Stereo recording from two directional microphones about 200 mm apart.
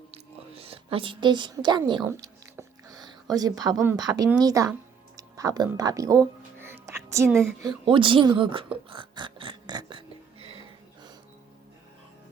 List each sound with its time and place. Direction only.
0.1 s whispering: 30° right (ahead or behind)
5.1 s speech: 20° right (ahead or behind)
8.9 s a sound: 25° right (ahead or behind)